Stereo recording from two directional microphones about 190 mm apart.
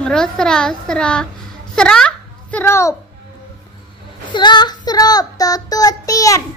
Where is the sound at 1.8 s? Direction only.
5° left (ahead or behind).